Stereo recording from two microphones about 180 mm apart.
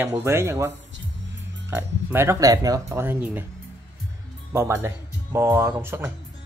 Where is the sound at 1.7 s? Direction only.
10° right (ahead or behind).